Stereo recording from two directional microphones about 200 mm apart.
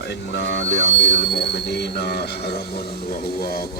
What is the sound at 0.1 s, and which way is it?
Speech, 60° left (ahead or behind).